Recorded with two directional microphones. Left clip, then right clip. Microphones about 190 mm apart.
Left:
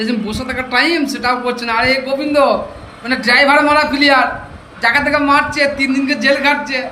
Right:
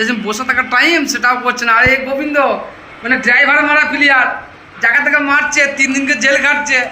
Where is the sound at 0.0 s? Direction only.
5° left (ahead or behind).